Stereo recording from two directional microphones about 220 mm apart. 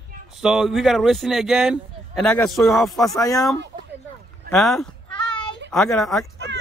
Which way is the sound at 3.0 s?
15° left (ahead or behind).